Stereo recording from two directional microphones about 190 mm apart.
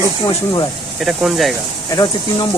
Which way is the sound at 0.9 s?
Centre (ahead or behind).